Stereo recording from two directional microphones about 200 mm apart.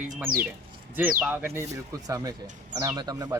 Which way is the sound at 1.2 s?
10° right (ahead or behind).